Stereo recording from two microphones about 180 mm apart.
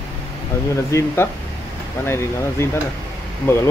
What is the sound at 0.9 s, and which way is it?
Speech, 15° left (ahead or behind).